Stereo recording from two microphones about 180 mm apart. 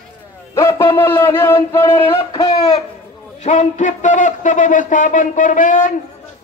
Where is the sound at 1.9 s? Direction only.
30° left (ahead or behind).